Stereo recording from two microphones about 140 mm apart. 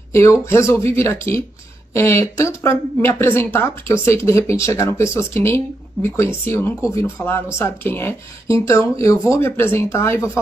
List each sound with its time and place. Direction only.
0.1 s speech: 20° left (ahead or behind)